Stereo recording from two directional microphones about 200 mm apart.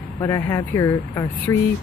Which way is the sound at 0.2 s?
10° left (ahead or behind).